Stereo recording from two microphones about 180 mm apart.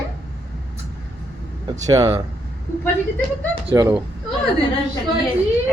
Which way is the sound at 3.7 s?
20° right (ahead or behind).